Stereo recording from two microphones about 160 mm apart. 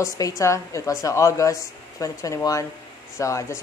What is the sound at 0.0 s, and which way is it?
Speech, 20° left (ahead or behind).